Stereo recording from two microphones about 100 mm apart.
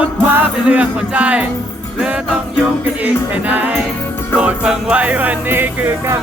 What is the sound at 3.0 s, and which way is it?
Music, 15° right (ahead or behind).